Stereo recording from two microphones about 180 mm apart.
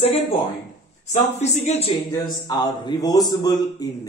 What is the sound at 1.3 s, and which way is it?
Speech, 40° left (ahead or behind).